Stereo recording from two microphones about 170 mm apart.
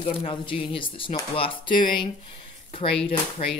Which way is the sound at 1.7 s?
55° left (ahead or behind).